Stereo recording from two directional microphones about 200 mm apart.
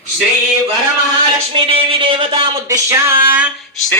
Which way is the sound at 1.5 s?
25° right (ahead or behind).